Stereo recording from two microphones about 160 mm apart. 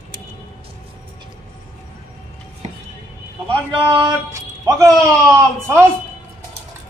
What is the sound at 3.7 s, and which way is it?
Speech, 25° right (ahead or behind).